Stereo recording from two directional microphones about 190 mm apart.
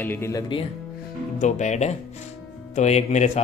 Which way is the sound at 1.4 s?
40° left (ahead or behind).